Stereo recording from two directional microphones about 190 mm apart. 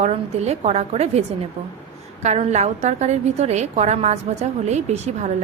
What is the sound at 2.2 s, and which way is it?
A woman's voice, 35° right (ahead or behind).